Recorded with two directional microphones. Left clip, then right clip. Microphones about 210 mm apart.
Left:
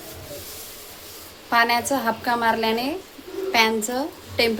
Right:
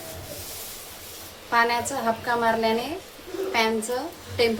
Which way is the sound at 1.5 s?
45° left (ahead or behind).